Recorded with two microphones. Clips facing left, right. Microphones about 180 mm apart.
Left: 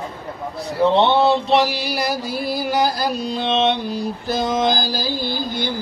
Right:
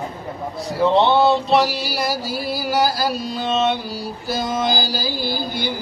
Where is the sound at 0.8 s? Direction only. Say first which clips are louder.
Even; centre (ahead or behind).